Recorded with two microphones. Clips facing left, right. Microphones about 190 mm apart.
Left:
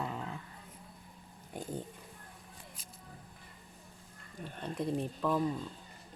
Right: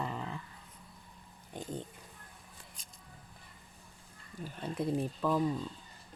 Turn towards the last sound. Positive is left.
turn(degrees=-5)  # may be behind; listen again after turning